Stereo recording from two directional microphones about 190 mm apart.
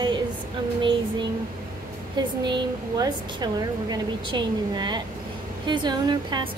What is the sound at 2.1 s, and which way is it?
A woman's voice, 20° right (ahead or behind).